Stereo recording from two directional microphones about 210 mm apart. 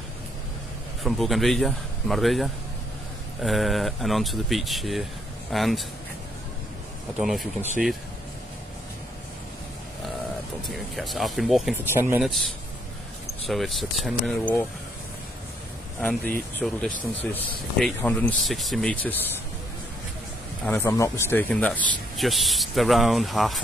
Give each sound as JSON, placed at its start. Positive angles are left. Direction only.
{"t": 1.0, "sound": "speech", "side_deg": 0}
{"t": 7.2, "sound": "speech", "side_deg": -5}
{"t": 10.7, "sound": "speech", "side_deg": 0}
{"t": 13.5, "sound": "speech", "side_deg": 0}
{"t": 16.5, "sound": "speech", "side_deg": 5}
{"t": 20.6, "sound": "speech", "side_deg": 10}